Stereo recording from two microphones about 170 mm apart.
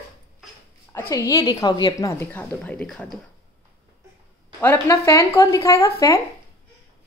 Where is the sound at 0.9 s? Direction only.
20° left (ahead or behind).